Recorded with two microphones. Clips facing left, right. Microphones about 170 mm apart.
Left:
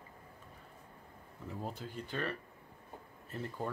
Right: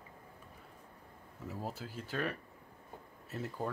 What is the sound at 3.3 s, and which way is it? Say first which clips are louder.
Speech: right 1 dB; 5° right (ahead or behind).